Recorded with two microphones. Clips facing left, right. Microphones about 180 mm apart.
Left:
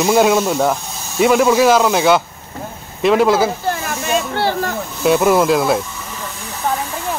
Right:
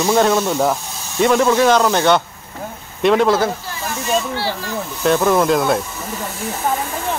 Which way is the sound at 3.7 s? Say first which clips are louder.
Left 1 dB; 55° left (ahead or behind).